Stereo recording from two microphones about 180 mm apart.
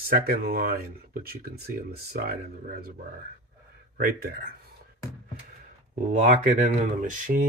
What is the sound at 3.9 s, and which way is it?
Speech, 60° right (ahead or behind).